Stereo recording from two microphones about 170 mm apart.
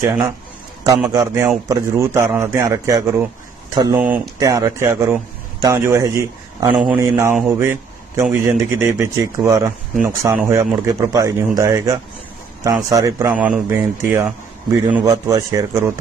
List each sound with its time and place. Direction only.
0.0 s a man's voice: 15° right (ahead or behind)
6.7 s a man's voice: 5° right (ahead or behind)
7.0 s a man's voice: 15° right (ahead or behind)
13.3 s a man's voice: 10° right (ahead or behind)